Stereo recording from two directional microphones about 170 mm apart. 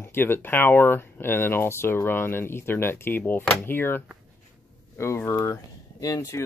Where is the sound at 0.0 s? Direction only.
15° left (ahead or behind).